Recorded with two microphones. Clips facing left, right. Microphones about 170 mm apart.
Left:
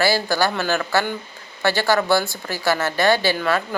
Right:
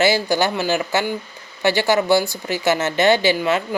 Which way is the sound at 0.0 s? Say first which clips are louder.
Right 2 dB; 20° right (ahead or behind).